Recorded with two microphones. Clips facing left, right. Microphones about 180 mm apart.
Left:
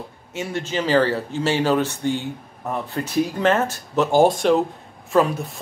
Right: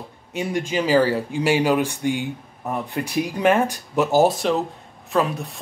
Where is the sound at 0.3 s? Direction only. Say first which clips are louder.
Right 2 dB; 15° right (ahead or behind).